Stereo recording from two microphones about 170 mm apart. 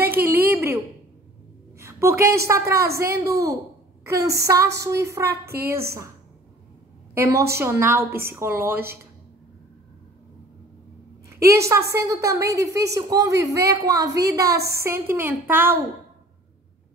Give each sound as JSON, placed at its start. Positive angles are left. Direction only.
{"t": 0.0, "sound": "a sound", "side_deg": -10}
{"t": 1.8, "sound": "a woman's voice", "side_deg": -15}
{"t": 7.2, "sound": "a woman's voice", "side_deg": -15}
{"t": 11.2, "sound": "a woman's voice", "side_deg": -15}